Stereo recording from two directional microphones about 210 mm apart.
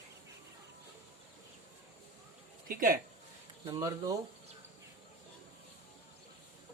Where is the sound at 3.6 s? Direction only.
20° right (ahead or behind).